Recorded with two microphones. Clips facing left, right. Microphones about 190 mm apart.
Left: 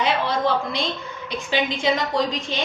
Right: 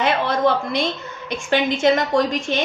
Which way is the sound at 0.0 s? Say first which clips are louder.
Right 3 dB; 50° right (ahead or behind).